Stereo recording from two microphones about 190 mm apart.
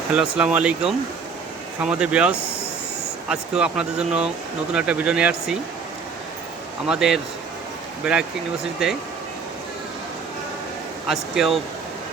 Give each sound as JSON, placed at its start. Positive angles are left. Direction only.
{"t": 0.1, "sound": "speech", "side_deg": -5}
{"t": 6.8, "sound": "speech", "side_deg": -5}
{"t": 11.1, "sound": "speech", "side_deg": 0}